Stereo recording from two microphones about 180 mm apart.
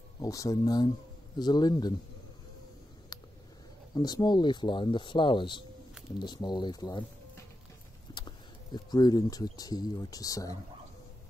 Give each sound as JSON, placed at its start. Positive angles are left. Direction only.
{"t": 0.2, "sound": "speech", "side_deg": 20}
{"t": 3.9, "sound": "speech", "side_deg": 20}